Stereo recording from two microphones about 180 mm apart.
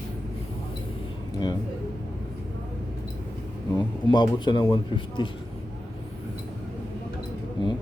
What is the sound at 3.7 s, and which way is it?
Speech, 25° left (ahead or behind).